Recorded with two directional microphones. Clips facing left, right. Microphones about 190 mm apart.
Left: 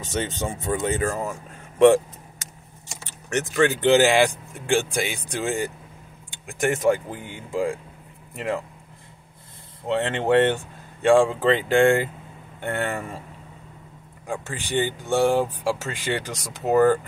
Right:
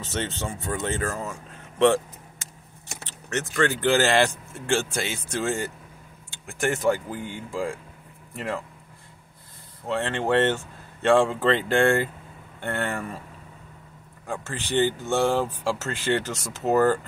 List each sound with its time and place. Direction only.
0.0 s speech: 15° left (ahead or behind)
3.1 s speech: 15° left (ahead or behind)
9.8 s speech: 20° left (ahead or behind)
14.2 s speech: 15° left (ahead or behind)